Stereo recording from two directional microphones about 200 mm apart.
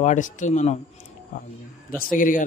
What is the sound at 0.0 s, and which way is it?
Speech, 40° left (ahead or behind).